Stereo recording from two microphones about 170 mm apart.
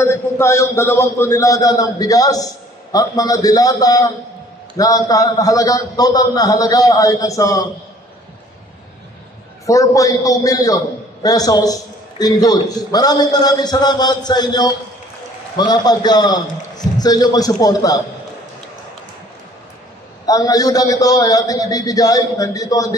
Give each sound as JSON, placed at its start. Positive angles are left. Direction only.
{"t": 0.0, "sound": "a man's voice", "side_deg": 15}
{"t": 9.7, "sound": "a man's voice", "side_deg": 20}
{"t": 20.2, "sound": "a man's voice", "side_deg": 20}